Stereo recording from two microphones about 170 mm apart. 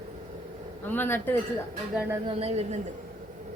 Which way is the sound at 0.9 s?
10° left (ahead or behind).